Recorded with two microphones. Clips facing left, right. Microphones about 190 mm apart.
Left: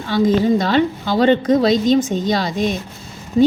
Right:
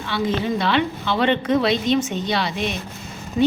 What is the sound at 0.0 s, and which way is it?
A woman's voice, 40° left (ahead or behind).